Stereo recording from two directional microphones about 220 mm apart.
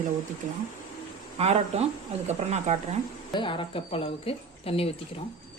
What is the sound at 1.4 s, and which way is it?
Speech, 30° right (ahead or behind).